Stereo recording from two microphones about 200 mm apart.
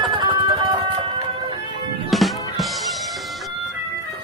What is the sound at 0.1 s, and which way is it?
Music, 25° right (ahead or behind).